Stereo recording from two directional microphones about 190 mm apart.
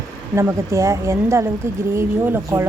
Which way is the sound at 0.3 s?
15° right (ahead or behind).